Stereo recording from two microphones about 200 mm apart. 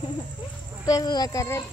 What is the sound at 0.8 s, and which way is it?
Speech, 20° left (ahead or behind).